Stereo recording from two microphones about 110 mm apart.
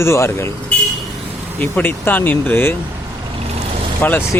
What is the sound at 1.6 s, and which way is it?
Speech, 15° left (ahead or behind).